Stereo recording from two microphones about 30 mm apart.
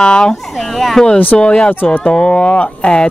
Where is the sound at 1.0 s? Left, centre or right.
Centre.